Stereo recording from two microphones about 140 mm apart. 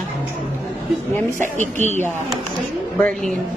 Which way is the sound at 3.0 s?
5° left (ahead or behind).